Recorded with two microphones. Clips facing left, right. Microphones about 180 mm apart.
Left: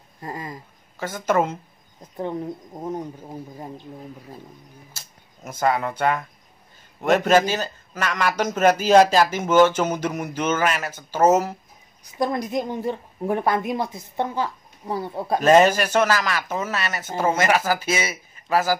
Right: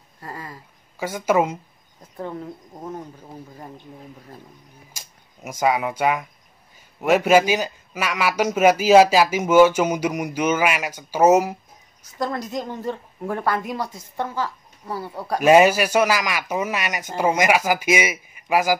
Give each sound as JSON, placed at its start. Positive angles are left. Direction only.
{"t": 0.2, "sound": "a sound", "side_deg": 20}
{"t": 0.9, "sound": "a man's voice", "side_deg": -10}
{"t": 2.0, "sound": "a woman's voice", "side_deg": 20}
{"t": 4.9, "sound": "a man's voice", "side_deg": -10}
{"t": 12.0, "sound": "a woman's voice", "side_deg": 15}
{"t": 15.4, "sound": "a man's voice", "side_deg": -10}